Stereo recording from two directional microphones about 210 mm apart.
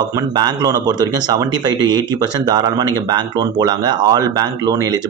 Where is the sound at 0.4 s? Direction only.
20° right (ahead or behind).